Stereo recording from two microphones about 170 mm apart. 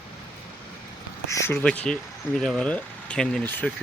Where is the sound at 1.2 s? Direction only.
15° left (ahead or behind).